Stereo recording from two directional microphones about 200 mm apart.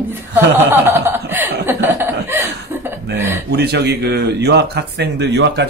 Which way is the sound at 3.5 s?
55° right (ahead or behind).